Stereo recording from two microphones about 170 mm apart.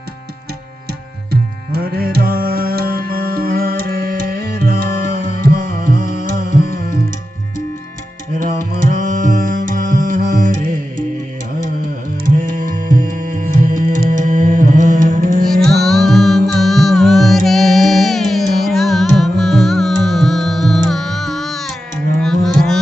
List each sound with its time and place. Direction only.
1.3 s music: 65° right (ahead or behind)
8.4 s music: 50° right (ahead or behind)
12.2 s music: 50° right (ahead or behind)
15.4 s music: centre (ahead or behind)
22.2 s a sound: centre (ahead or behind)